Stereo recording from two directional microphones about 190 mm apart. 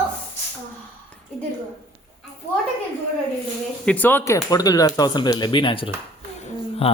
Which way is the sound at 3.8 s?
10° left (ahead or behind).